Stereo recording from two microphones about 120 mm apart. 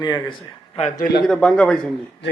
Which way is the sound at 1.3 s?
5° left (ahead or behind).